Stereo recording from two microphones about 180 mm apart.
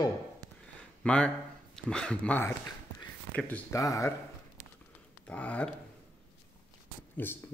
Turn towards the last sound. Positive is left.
turn(degrees=10)  # may be behind; listen again after turning